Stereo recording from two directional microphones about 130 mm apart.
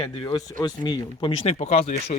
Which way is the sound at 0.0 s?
40° left (ahead or behind).